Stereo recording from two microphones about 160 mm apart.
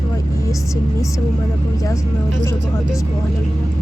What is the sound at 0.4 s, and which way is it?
Speech, 20° left (ahead or behind).